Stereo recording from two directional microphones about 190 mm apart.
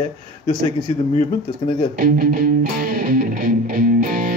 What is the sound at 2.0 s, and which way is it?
Music, 50° right (ahead or behind).